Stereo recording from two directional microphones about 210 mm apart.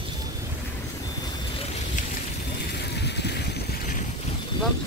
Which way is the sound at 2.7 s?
55° left (ahead or behind).